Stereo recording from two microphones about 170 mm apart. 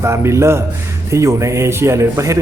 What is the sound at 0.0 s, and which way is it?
A man's voice, 15° right (ahead or behind).